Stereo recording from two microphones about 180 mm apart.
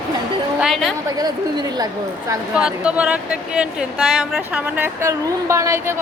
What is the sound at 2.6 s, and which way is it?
Speech, 5° right (ahead or behind).